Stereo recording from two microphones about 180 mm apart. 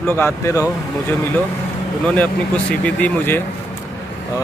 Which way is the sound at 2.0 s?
5° left (ahead or behind).